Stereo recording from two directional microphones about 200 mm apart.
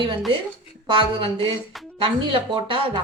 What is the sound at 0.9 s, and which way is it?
A woman's voice, 25° right (ahead or behind).